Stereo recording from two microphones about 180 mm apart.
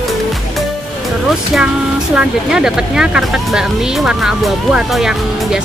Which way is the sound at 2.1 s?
5° right (ahead or behind).